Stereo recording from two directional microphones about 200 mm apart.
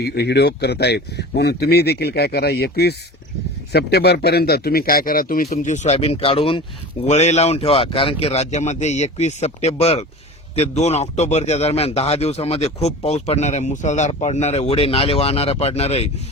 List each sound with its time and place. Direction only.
0.0 s a man's voice: 55° left (ahead or behind); by 16.0 s 30° left (ahead or behind)